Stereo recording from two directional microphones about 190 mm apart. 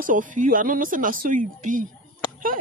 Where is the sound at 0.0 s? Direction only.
45° right (ahead or behind).